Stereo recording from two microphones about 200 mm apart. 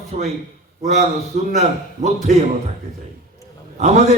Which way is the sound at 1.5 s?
35° right (ahead or behind).